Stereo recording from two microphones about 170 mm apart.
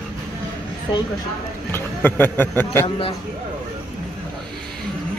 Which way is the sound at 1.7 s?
10° left (ahead or behind).